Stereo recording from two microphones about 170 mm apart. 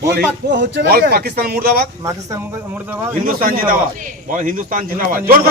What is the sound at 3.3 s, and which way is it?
A man's voice, 55° right (ahead or behind).